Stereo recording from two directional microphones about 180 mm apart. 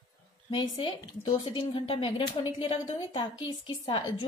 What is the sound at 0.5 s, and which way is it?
A woman's voice, 25° left (ahead or behind).